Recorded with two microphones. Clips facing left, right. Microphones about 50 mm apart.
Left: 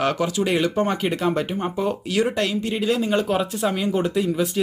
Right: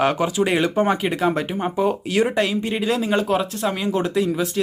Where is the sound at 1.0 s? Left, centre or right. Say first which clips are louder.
Right 1 dB; centre.